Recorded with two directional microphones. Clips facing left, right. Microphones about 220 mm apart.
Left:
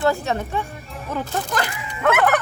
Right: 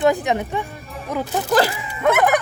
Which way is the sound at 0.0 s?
15° right (ahead or behind).